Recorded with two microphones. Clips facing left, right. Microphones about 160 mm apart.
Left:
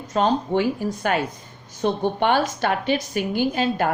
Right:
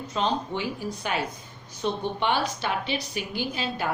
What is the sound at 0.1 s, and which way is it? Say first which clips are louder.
A woman's voice: left 7 dB; 50° left (ahead or behind).